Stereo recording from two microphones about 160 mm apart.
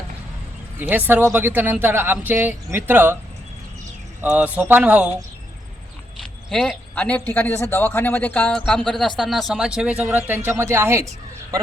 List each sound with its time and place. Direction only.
0.8 s speech: 10° right (ahead or behind)
4.2 s speech: 10° right (ahead or behind)
6.5 s a man's voice: 5° left (ahead or behind); by 11.1 s 15° right (ahead or behind)